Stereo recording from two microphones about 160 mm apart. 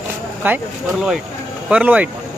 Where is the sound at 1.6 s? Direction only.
10° right (ahead or behind).